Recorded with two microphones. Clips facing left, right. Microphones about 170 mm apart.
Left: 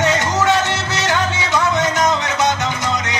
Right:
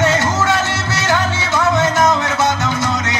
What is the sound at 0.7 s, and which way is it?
Music, 15° left (ahead or behind).